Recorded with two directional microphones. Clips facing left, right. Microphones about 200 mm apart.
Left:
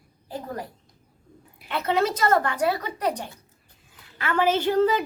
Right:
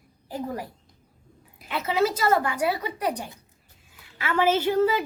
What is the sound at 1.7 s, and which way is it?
A woman's voice, 5° right (ahead or behind).